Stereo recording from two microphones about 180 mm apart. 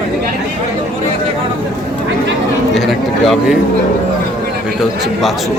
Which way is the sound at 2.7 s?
Centre (ahead or behind).